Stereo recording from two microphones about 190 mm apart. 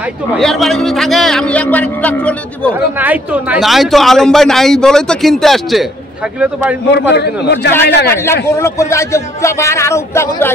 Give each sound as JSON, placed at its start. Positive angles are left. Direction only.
{"t": 0.3, "sound": "speech", "side_deg": 0}
{"t": 3.0, "sound": "speech", "side_deg": -10}
{"t": 6.9, "sound": "a man's voice", "side_deg": 60}
{"t": 8.5, "sound": "speech", "side_deg": 15}